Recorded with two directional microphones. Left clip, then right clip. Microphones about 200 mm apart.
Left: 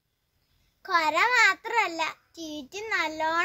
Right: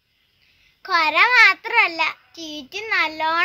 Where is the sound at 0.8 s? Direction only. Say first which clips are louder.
Right 7 dB; 15° left (ahead or behind).